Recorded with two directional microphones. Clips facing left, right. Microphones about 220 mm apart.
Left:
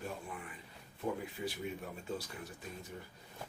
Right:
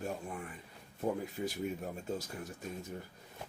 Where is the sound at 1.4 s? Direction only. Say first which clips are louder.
Right 3 dB; 45° right (ahead or behind).